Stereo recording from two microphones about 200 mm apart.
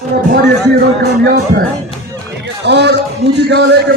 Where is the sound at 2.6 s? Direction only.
60° right (ahead or behind).